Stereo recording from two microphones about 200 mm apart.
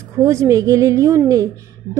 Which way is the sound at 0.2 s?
15° right (ahead or behind).